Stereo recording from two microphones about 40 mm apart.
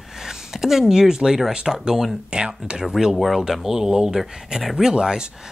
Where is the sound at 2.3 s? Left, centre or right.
Right.